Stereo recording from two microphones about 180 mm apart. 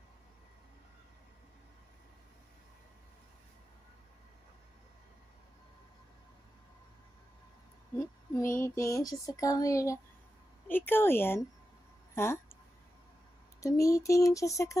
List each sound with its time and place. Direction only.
8.0 s female singing: 15° left (ahead or behind)
12.2 s speech: 15° left (ahead or behind)
13.6 s female singing: 15° left (ahead or behind)